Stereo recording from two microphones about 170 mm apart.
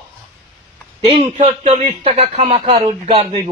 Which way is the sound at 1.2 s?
40° right (ahead or behind).